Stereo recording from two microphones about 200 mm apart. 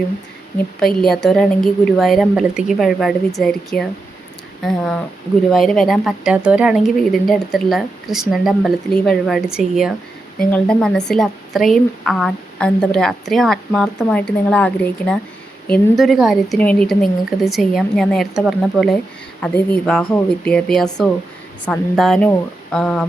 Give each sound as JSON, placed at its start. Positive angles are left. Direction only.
{"t": 1.0, "sound": "a woman's voice", "side_deg": 0}